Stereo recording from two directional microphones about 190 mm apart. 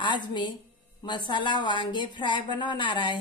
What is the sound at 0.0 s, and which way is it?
A woman's voice, 25° left (ahead or behind).